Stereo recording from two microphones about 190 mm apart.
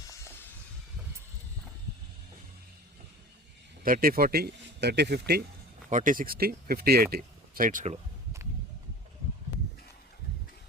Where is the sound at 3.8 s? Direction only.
50° right (ahead or behind).